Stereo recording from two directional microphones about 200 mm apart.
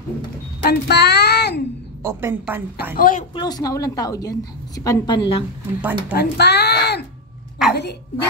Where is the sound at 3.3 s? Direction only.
20° left (ahead or behind).